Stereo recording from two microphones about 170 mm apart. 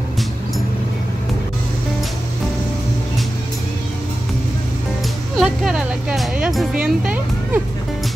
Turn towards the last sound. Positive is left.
turn(degrees=-5)  # may be behind; listen again after turning